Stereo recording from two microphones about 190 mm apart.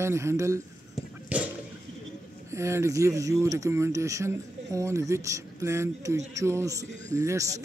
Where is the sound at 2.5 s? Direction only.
15° right (ahead or behind).